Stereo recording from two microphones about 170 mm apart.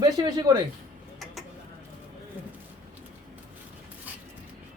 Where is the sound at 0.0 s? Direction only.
25° right (ahead or behind).